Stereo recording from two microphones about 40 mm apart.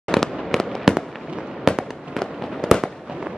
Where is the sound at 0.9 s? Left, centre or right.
Centre.